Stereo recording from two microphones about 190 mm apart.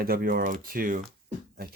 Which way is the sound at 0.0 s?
50° right (ahead or behind).